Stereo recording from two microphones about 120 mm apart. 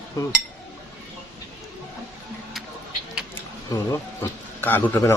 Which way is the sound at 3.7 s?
30° left (ahead or behind).